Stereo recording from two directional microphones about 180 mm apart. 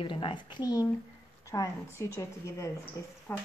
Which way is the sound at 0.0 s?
25° left (ahead or behind).